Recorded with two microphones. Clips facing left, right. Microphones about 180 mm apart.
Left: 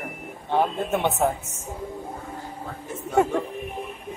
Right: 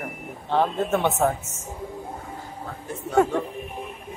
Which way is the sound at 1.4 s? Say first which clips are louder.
Even; 35° left (ahead or behind).